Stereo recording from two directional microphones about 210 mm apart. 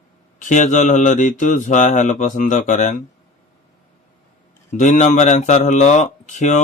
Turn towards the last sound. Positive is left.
turn(degrees=35)  # may be behind; listen again after turning